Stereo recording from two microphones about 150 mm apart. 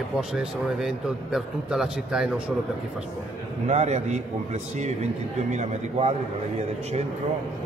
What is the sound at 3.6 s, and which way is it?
Speech, 50° right (ahead or behind).